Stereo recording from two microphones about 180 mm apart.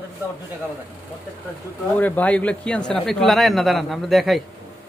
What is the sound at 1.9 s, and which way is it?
A man's voice, 10° left (ahead or behind).